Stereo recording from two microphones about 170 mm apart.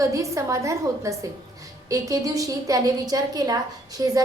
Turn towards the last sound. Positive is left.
turn(degrees=-20)  # may be behind; listen again after turning